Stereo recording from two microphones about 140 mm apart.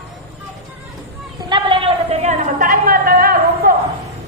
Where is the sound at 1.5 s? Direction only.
40° right (ahead or behind); by 3.7 s 90° right.